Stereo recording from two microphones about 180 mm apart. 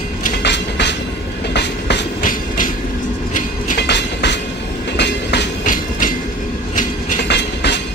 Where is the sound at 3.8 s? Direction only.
70° left (ahead or behind).